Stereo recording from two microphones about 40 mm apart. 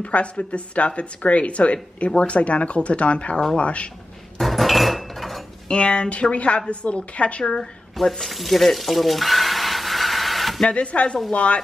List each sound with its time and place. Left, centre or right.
0.0 s speech: left
4.4 s dishes: centre
5.7 s speech: left
8.0 s a sound: centre
10.7 s speech: left